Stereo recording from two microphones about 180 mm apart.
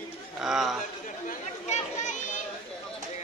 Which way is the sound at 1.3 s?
40° left (ahead or behind).